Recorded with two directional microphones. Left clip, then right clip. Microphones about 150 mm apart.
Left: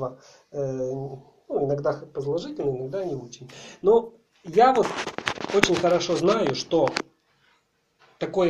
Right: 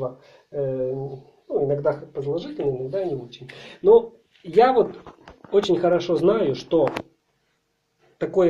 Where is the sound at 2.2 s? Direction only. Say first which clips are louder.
Right 2 dB; centre (ahead or behind).